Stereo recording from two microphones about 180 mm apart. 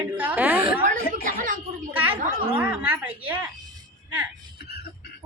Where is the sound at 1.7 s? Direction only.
45° right (ahead or behind).